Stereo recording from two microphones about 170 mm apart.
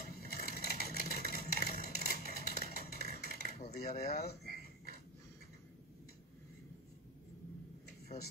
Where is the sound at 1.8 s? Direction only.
65° left (ahead or behind).